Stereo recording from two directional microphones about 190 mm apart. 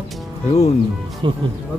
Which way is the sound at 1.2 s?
25° right (ahead or behind).